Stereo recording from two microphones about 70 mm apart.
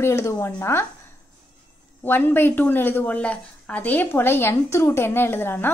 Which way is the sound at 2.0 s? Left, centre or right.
Left.